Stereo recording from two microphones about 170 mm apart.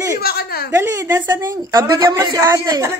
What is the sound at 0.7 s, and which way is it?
A woman's voice, 15° right (ahead or behind).